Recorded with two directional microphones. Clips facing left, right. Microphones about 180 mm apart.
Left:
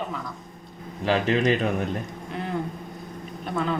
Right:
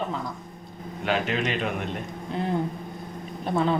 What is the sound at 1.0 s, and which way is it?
Speech, 35° left (ahead or behind).